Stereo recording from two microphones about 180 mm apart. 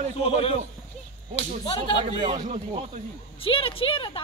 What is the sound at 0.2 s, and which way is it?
Speech, 35° left (ahead or behind).